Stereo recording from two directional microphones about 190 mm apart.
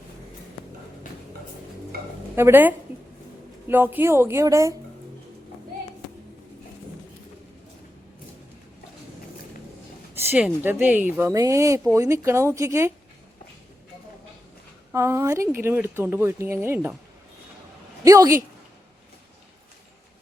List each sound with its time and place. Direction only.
2.3 s speech: 10° right (ahead or behind)
10.2 s speech: 10° right (ahead or behind)
14.9 s speech: 15° right (ahead or behind)
18.0 s speech: 20° right (ahead or behind)